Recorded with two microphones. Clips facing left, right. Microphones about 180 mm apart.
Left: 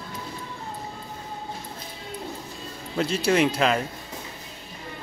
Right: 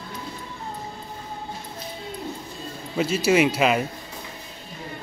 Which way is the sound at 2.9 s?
5° right (ahead or behind).